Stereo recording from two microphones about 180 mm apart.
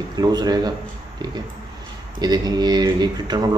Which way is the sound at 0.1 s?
20° right (ahead or behind).